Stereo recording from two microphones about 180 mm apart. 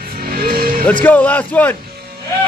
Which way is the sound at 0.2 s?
55° right (ahead or behind).